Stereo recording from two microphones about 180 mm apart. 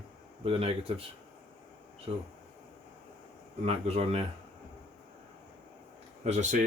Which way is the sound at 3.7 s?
35° right (ahead or behind).